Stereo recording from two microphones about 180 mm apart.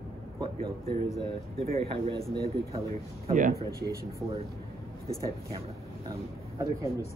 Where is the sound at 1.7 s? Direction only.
35° right (ahead or behind).